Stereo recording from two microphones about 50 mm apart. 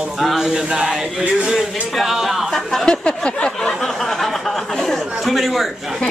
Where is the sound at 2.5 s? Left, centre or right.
Centre.